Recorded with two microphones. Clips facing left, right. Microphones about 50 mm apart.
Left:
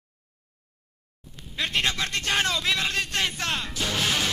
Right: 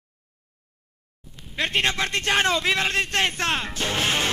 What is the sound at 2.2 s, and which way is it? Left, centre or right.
Music, right.